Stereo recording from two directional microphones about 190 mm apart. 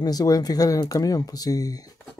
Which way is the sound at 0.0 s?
20° left (ahead or behind).